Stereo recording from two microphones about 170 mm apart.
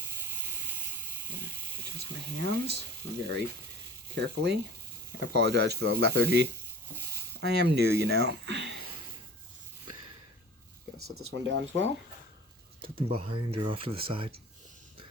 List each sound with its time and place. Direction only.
0.3 s hiss: 10° right (ahead or behind)
2.0 s speech: 75° right (ahead or behind)
4.1 s speech: 90° right
6.9 s a sound: 15° right (ahead or behind)
7.4 s speech: 75° right (ahead or behind)
11.0 s speech: 90° right
13.1 s speech: 30° right (ahead or behind)